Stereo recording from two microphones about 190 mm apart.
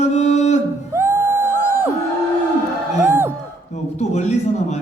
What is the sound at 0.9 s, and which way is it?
Music, 15° right (ahead or behind).